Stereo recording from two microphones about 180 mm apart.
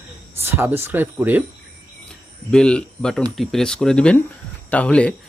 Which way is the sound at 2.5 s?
5° left (ahead or behind).